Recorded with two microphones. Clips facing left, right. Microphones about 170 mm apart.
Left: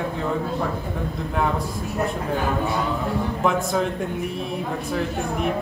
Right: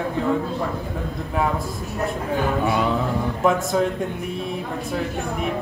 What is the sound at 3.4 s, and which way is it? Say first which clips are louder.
Speech: right 3 dB; centre (ahead or behind).